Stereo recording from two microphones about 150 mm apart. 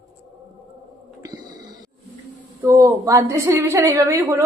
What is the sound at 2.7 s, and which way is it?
A woman's voice, 20° right (ahead or behind).